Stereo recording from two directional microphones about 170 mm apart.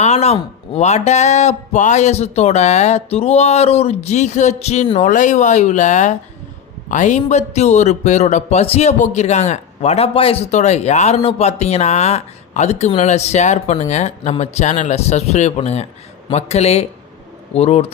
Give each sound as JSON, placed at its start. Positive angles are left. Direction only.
{"t": 0.0, "sound": "a man's voice", "side_deg": 40}